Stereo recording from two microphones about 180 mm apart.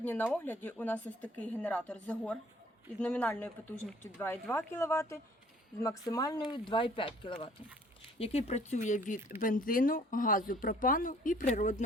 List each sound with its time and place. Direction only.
0.0 s speech: 10° left (ahead or behind); by 11.9 s 40° left (ahead or behind)